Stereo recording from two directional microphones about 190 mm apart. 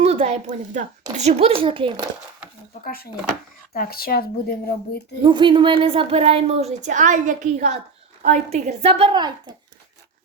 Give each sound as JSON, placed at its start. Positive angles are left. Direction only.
{"t": 0.0, "sound": "speech", "side_deg": -35}
{"t": 2.8, "sound": "speech", "side_deg": 50}
{"t": 5.2, "sound": "a woman's voice", "side_deg": -25}